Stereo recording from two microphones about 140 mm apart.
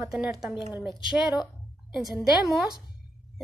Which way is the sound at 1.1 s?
30° left (ahead or behind).